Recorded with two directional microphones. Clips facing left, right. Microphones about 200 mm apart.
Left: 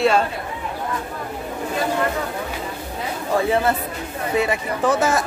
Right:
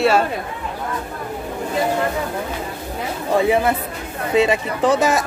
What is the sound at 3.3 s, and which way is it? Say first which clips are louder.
Speech: right 2 dB; 15° right (ahead or behind).